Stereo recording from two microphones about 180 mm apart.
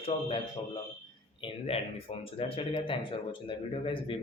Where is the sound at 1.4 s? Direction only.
35° left (ahead or behind).